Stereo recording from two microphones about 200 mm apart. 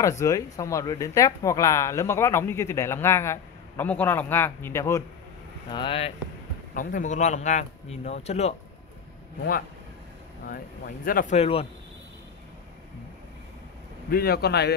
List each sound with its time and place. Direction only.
0.0 s speech: 15° left (ahead or behind)
5.7 s speech: 25° left (ahead or behind)
6.7 s a man's voice: 40° left (ahead or behind)
11.1 s a man's voice: 45° left (ahead or behind)
11.3 s speech: 30° left (ahead or behind)
14.1 s a man's voice: 50° left (ahead or behind)